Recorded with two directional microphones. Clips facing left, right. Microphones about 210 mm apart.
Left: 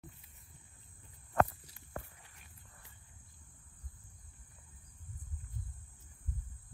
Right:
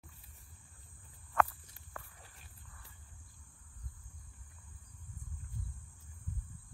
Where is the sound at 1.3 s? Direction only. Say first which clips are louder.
Left 2 dB; 30° left (ahead or behind).